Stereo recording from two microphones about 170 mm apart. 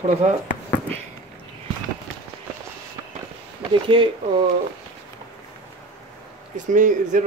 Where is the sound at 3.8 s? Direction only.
30° right (ahead or behind).